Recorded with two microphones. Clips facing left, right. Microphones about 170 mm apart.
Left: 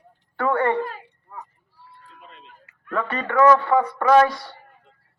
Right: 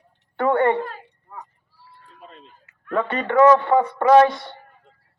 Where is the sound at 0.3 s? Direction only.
25° right (ahead or behind).